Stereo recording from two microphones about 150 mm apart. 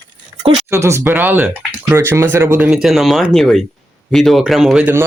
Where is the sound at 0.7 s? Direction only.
20° right (ahead or behind).